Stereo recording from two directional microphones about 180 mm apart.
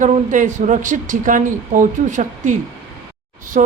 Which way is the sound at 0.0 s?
45° right (ahead or behind).